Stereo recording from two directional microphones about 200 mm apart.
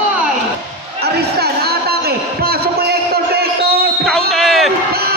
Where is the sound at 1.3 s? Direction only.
50° right (ahead or behind).